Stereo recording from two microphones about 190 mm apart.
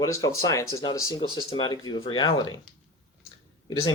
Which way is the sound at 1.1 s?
25° left (ahead or behind).